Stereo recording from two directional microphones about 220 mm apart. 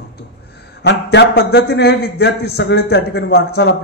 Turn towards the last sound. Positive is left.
turn(degrees=50)  # may be behind; listen again after turning